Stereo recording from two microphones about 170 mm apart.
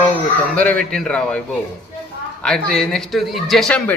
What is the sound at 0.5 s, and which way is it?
A man's voice, 5° left (ahead or behind).